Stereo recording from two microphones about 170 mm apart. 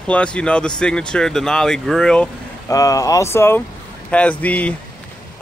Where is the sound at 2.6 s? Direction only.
20° left (ahead or behind).